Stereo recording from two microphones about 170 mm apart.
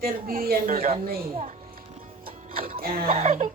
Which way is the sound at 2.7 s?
60° right (ahead or behind).